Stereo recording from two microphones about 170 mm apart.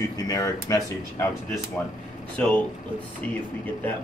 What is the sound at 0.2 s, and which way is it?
Speech, 20° left (ahead or behind).